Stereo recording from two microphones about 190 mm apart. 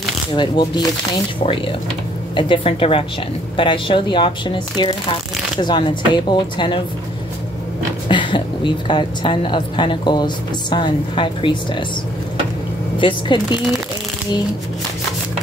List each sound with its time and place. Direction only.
0.4 s a woman's voice: 25° left (ahead or behind)
2.3 s a woman's voice: 25° left (ahead or behind)
8.1 s a woman's voice: 25° left (ahead or behind)
13.0 s a woman's voice: 25° left (ahead or behind)